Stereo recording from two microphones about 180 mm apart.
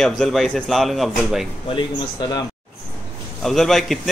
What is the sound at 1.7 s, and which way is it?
Speech, 25° left (ahead or behind).